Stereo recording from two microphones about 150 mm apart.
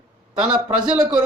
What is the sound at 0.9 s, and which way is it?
Speech, 5° right (ahead or behind).